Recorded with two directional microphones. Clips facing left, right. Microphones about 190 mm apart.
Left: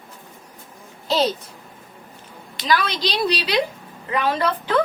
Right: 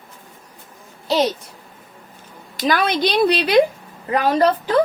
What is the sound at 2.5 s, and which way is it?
A woman's voice, 50° right (ahead or behind).